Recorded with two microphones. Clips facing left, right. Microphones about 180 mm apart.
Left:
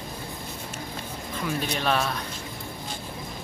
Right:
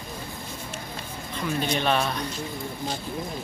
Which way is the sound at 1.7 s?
Centre (ahead or behind).